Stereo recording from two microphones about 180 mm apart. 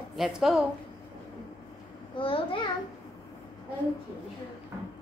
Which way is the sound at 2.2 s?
30° left (ahead or behind).